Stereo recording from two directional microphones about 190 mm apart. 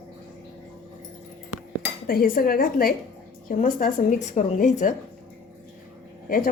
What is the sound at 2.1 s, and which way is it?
A woman's voice, 50° left (ahead or behind).